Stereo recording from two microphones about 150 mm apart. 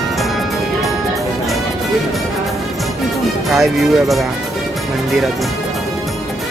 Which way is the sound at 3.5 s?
Centre (ahead or behind).